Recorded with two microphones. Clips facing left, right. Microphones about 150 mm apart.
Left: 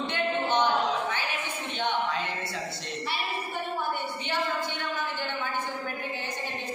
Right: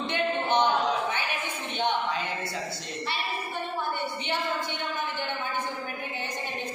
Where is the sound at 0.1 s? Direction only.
15° right (ahead or behind).